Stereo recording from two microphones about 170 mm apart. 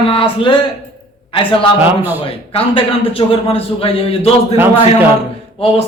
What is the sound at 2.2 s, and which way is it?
A man's voice, 35° left (ahead or behind).